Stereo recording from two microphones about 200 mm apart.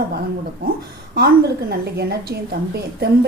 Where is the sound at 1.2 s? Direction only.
50° right (ahead or behind).